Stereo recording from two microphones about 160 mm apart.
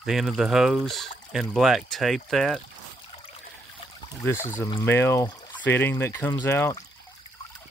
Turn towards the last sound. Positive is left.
turn(degrees=15)  # may be behind; listen again after turning